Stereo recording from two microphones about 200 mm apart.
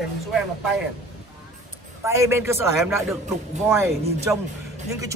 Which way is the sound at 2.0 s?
15° right (ahead or behind).